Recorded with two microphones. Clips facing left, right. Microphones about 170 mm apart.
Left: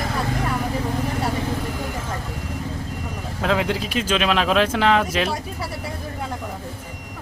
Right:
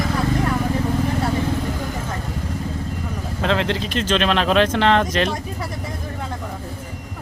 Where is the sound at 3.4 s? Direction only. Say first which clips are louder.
Right 1 dB; 5° left (ahead or behind).